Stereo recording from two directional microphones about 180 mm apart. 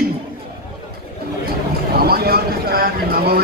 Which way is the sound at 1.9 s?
60° right (ahead or behind).